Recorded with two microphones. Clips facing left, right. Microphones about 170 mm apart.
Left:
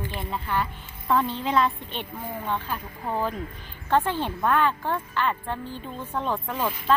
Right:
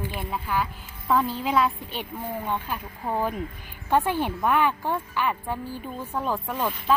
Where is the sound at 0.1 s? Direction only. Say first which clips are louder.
Left 2 dB; 5° right (ahead or behind).